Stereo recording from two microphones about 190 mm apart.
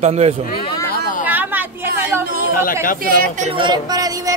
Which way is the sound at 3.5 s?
25° right (ahead or behind).